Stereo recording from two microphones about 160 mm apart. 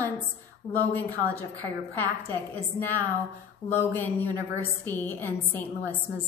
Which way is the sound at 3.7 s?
15° left (ahead or behind).